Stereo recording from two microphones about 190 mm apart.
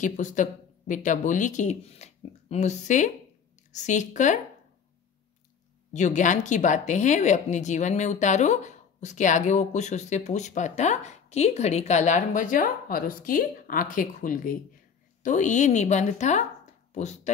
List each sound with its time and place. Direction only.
0.0 s a woman's voice: 40° left (ahead or behind)
5.9 s a woman's voice: 40° left (ahead or behind)